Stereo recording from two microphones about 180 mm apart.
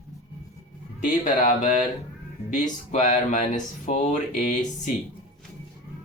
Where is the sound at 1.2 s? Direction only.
45° left (ahead or behind).